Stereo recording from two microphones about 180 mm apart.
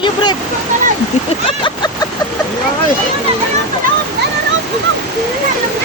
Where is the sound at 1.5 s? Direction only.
25° left (ahead or behind).